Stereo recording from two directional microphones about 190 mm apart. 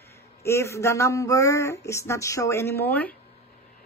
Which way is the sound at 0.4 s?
15° left (ahead or behind).